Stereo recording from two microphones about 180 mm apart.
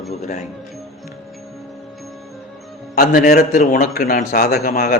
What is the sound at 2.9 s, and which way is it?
A man's voice, 55° left (ahead or behind).